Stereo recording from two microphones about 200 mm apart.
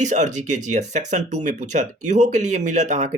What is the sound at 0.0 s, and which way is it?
Speech, 35° right (ahead or behind).